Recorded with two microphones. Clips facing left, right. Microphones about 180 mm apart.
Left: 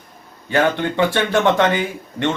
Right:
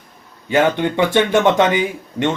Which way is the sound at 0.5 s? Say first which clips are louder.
Right 2 dB; 15° right (ahead or behind).